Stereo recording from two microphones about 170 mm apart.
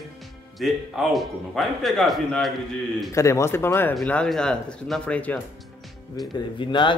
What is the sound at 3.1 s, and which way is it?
A man's voice, 15° left (ahead or behind).